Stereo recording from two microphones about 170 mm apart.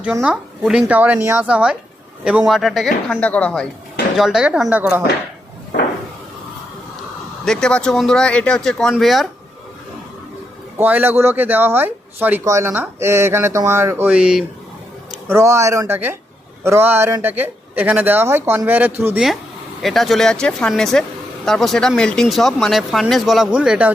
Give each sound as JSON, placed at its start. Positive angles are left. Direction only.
{"t": 0.0, "sound": "speech", "side_deg": -5}
{"t": 7.4, "sound": "speech", "side_deg": 5}
{"t": 10.8, "sound": "speech", "side_deg": -10}
{"t": 15.3, "sound": "speech", "side_deg": -15}
{"t": 19.8, "sound": "speech", "side_deg": 0}